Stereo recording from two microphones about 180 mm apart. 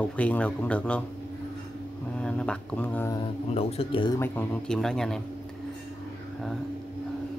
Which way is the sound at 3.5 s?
35° left (ahead or behind).